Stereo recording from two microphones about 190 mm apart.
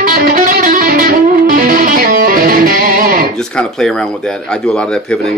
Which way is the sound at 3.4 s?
Centre (ahead or behind).